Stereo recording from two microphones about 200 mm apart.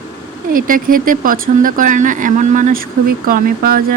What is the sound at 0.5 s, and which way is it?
Speech, 45° right (ahead or behind).